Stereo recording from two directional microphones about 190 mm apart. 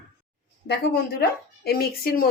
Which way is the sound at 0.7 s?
55° left (ahead or behind).